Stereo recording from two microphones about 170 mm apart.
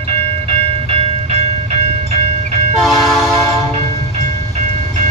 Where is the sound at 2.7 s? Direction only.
Centre (ahead or behind).